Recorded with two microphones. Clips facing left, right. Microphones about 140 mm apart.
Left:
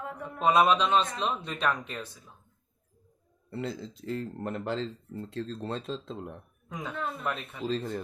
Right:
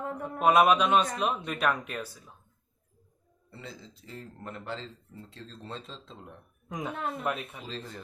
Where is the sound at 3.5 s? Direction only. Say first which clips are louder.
Left 10 dB; 65° left (ahead or behind); by 4.8 s 50° left (ahead or behind).